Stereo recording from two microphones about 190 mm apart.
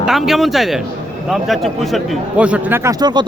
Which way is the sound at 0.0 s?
Centre (ahead or behind).